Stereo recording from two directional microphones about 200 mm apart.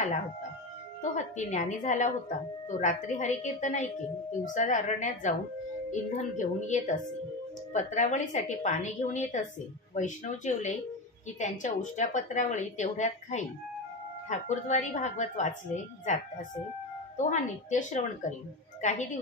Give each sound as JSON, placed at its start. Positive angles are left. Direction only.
{"t": 1.0, "sound": "a woman's voice", "side_deg": 40}
{"t": 17.2, "sound": "a woman's voice", "side_deg": 40}